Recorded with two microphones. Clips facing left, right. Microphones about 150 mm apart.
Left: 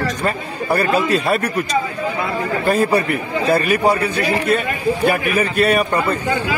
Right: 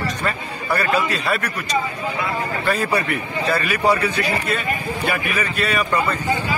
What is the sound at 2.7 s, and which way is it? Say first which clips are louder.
A man's voice: left 5 dB; 45° left (ahead or behind).